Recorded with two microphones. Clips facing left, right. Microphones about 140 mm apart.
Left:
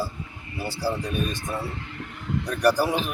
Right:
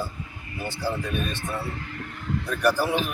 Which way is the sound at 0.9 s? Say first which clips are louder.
Left 1 dB; 15° left (ahead or behind).